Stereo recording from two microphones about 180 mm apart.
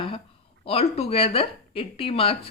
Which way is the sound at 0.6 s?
35° left (ahead or behind).